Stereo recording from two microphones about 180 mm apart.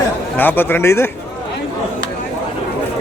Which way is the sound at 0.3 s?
10° left (ahead or behind).